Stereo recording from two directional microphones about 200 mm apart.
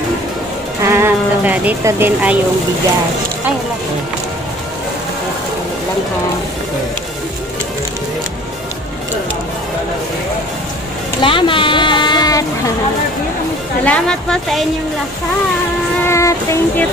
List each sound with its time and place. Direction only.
0.8 s speech: 10° right (ahead or behind)
11.1 s speech: 25° left (ahead or behind)
13.8 s a woman's voice: 5° left (ahead or behind)
16.1 s music: 15° left (ahead or behind)